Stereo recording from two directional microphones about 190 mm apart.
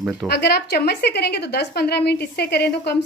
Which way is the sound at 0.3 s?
60° left (ahead or behind).